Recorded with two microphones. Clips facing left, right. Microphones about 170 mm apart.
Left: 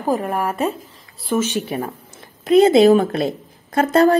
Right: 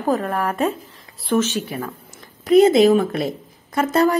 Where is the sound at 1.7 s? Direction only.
25° left (ahead or behind).